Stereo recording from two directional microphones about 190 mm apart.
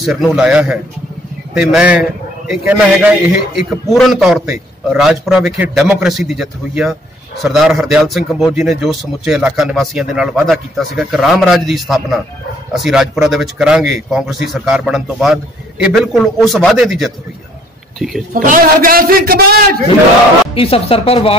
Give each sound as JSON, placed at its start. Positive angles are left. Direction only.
{"t": 0.0, "sound": "a man's voice", "side_deg": -5}
{"t": 18.3, "sound": "a man's voice", "side_deg": -45}
{"t": 20.5, "sound": "speech", "side_deg": 30}